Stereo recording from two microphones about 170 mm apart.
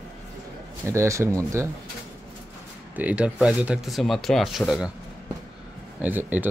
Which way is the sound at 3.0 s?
5° right (ahead or behind).